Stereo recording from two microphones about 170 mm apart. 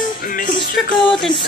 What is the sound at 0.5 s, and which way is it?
Music, 25° left (ahead or behind).